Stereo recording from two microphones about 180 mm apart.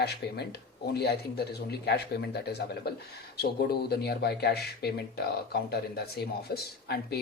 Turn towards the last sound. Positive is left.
turn(degrees=60)  # may be behind; listen again after turning